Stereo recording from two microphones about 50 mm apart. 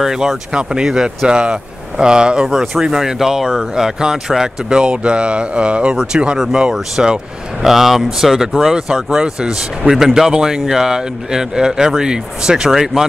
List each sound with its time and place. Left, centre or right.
0.0 s speech: centre
2.4 s speech: centre